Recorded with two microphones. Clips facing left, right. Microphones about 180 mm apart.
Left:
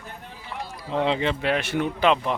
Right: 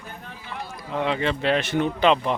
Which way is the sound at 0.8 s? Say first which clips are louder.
Left 1 dB; 25° left (ahead or behind).